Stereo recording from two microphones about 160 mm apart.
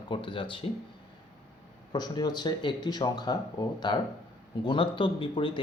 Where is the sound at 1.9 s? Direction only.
25° left (ahead or behind).